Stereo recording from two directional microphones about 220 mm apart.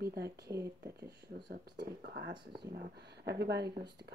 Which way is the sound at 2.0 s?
50° right (ahead or behind).